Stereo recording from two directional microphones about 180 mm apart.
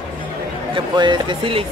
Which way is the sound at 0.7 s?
25° right (ahead or behind).